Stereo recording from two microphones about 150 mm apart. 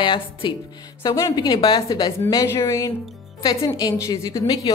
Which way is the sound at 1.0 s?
20° left (ahead or behind).